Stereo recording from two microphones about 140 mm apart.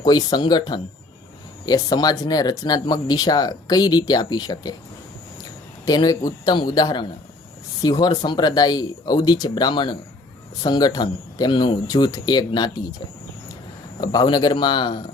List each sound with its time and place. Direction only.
0.0 s speech: 30° left (ahead or behind)
5.8 s speech: 25° left (ahead or behind)
14.0 s speech: 30° left (ahead or behind)